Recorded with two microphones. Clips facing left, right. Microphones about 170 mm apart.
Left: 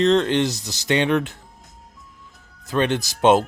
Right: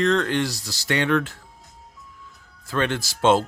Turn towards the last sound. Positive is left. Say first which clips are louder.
# left 3 dB
turn(degrees=15)  # may be behind; listen again after turning